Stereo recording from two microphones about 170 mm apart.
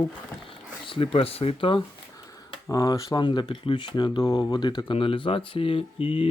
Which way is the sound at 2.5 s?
20° left (ahead or behind).